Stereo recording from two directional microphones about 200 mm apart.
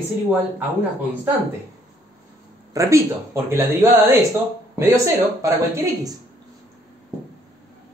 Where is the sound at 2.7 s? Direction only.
15° right (ahead or behind).